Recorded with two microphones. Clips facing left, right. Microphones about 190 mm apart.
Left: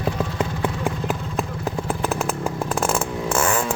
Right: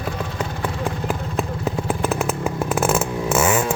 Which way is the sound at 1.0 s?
Centre (ahead or behind).